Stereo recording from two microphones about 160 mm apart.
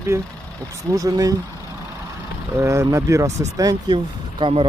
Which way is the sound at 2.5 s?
15° right (ahead or behind).